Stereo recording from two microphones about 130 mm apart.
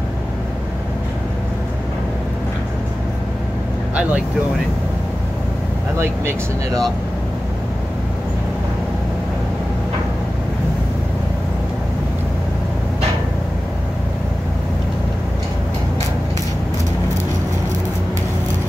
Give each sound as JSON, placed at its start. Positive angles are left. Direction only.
{"t": 5.9, "sound": "speech", "side_deg": -20}